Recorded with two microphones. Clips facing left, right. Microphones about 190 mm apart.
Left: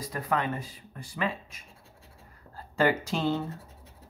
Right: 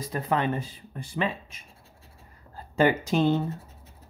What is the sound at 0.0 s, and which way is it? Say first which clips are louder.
Speech: right 3 dB; 25° right (ahead or behind).